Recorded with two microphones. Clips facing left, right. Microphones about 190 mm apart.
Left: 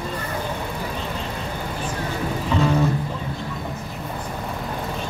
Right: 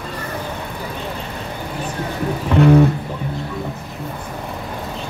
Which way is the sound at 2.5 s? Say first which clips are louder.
Right 8 dB; 60° right (ahead or behind).